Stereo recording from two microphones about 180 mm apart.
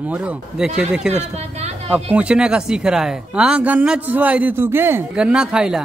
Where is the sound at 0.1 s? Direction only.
5° right (ahead or behind).